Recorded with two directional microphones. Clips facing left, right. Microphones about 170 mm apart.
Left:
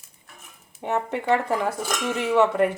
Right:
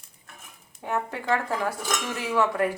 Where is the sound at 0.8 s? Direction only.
20° left (ahead or behind).